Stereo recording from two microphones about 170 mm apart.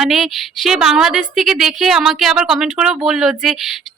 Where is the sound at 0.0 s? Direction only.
Centre (ahead or behind).